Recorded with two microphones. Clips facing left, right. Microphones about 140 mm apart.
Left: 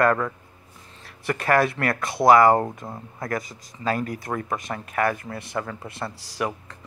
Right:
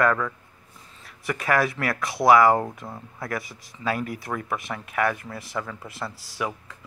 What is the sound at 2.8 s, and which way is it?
Speech, 20° left (ahead or behind).